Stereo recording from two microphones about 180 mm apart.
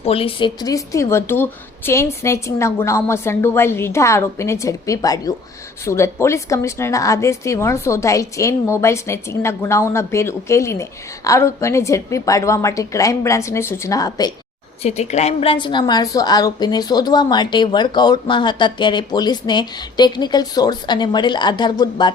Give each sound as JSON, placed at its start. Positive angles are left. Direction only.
{"t": 0.0, "sound": "a woman's voice", "side_deg": 30}
{"t": 14.8, "sound": "a woman's voice", "side_deg": 35}